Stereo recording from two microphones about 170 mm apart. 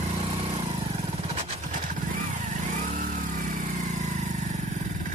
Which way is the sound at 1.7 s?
50° right (ahead or behind).